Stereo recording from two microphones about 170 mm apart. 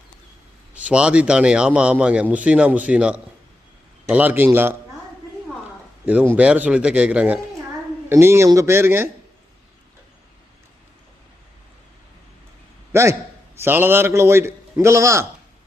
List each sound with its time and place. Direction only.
0.7 s a man's voice: 5° right (ahead or behind)
6.1 s a man's voice: 10° right (ahead or behind)
12.9 s a man's voice: 15° right (ahead or behind)